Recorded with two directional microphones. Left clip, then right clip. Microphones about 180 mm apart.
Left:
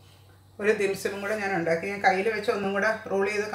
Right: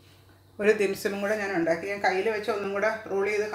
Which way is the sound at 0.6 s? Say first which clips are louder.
Right 1 dB; 30° right (ahead or behind).